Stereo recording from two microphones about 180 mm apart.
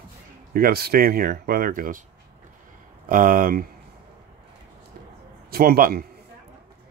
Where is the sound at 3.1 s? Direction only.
50° right (ahead or behind).